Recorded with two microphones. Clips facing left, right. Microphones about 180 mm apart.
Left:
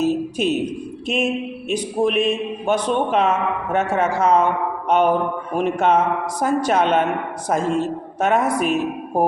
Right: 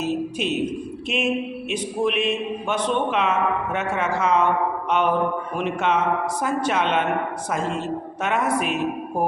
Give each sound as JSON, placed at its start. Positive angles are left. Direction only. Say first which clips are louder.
{"t": 0.0, "sound": "a man's voice", "louder": "left 5 dB", "side_deg": 40}